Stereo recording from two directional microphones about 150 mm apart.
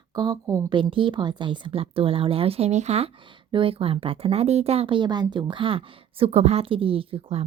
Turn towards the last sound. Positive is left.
turn(degrees=-40)  # may be behind; listen again after turning